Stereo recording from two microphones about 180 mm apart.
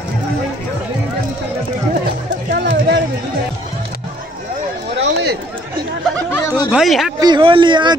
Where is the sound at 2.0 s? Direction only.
70° right (ahead or behind).